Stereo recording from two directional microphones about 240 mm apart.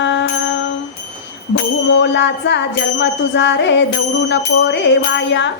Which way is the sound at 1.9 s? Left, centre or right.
Left.